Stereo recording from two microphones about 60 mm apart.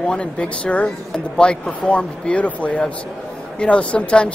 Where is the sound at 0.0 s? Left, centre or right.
Centre.